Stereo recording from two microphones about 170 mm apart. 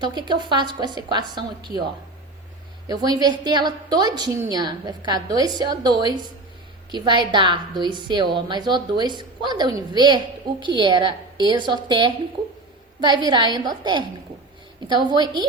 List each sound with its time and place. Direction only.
0.0 s a woman's voice: 25° right (ahead or behind)
2.9 s a woman's voice: 20° right (ahead or behind)